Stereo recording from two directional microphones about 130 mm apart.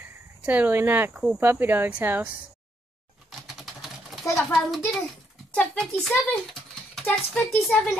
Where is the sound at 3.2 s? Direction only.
Centre (ahead or behind).